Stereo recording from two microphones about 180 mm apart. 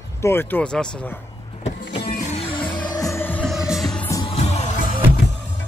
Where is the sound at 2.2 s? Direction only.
40° left (ahead or behind).